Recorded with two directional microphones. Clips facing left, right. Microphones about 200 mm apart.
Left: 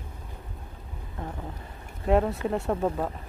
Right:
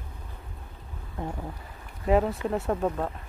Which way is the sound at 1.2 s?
15° right (ahead or behind).